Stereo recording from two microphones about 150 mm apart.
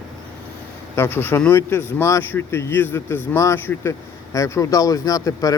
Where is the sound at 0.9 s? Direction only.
15° left (ahead or behind).